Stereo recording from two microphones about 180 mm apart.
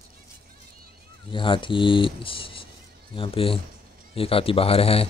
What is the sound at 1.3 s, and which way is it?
Speech, 25° left (ahead or behind).